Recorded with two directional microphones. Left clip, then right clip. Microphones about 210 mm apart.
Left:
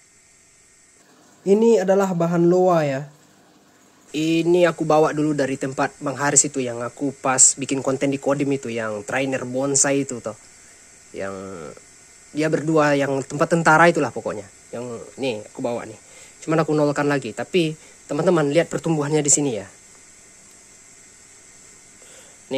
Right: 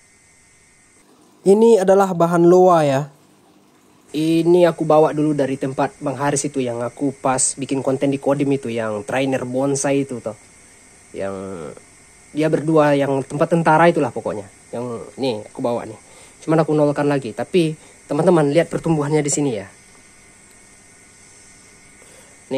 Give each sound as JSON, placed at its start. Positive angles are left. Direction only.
{"t": 1.4, "sound": "a man's voice", "side_deg": -35}
{"t": 4.1, "sound": "speech", "side_deg": 5}
{"t": 22.5, "sound": "speech", "side_deg": 10}